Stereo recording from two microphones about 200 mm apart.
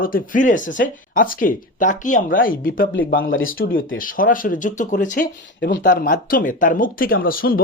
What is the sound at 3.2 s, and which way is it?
Speech, 85° left.